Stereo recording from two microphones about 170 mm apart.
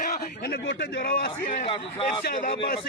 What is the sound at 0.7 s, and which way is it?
Speech, 85° left.